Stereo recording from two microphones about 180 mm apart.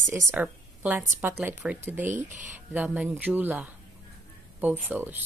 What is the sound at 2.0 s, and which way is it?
Speech, 45° right (ahead or behind).